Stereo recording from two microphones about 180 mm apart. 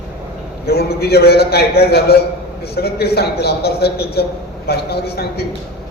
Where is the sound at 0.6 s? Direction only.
60° left (ahead or behind).